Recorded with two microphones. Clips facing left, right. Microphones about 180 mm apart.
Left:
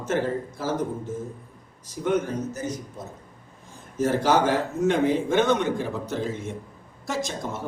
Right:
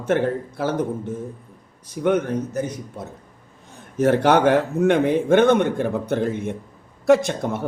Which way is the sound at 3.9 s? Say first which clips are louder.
Right 5 dB; 65° right (ahead or behind).